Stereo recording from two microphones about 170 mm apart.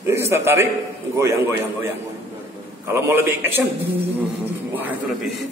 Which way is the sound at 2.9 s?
15° right (ahead or behind).